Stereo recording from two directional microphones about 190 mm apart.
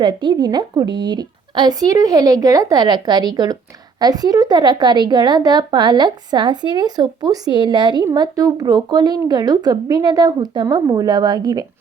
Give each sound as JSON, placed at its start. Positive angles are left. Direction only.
{"t": 0.0, "sound": "a woman's voice", "side_deg": -25}